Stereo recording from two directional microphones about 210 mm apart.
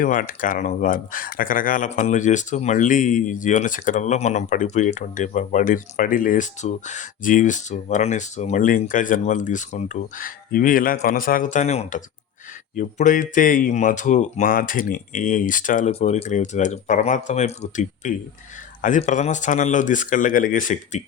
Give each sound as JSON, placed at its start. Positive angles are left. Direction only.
{"t": 0.0, "sound": "speech", "side_deg": 40}